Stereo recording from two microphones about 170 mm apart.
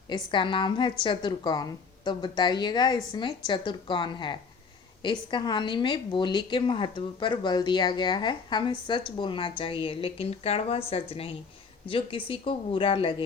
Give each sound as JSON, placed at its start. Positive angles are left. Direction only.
{"t": 0.1, "sound": "a woman's voice", "side_deg": 30}